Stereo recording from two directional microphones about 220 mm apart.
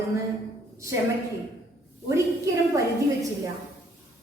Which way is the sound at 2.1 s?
15° right (ahead or behind).